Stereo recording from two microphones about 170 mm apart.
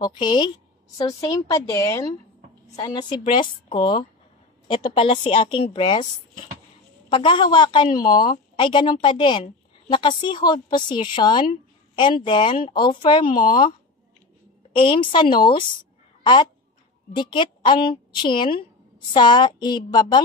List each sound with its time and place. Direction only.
0.0 s a woman's voice: 25° left (ahead or behind)
7.1 s a woman's voice: 30° left (ahead or behind)
14.8 s a woman's voice: 30° left (ahead or behind)